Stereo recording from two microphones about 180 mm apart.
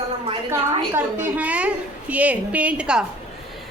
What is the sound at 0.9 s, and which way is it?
A woman's voice, 10° right (ahead or behind).